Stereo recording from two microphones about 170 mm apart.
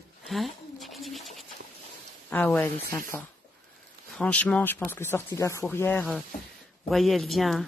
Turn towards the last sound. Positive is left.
turn(degrees=0)  # may be behind; listen again after turning